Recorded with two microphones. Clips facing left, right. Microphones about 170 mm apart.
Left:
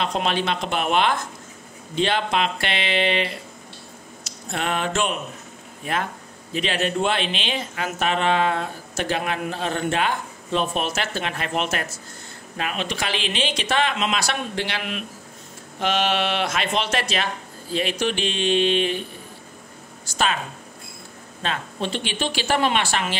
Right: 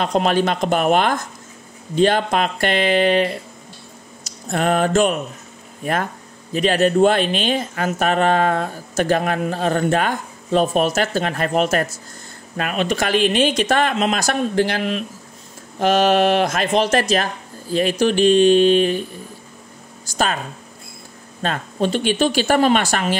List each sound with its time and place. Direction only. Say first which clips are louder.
0.0 s speech: right 6 dB; 45° right (ahead or behind)
4.2 s a sound: right 7 dB; 45° right (ahead or behind)
5.8 s speech: right 4 dB; 45° right (ahead or behind)
21.4 s speech: right 6 dB; 45° right (ahead or behind)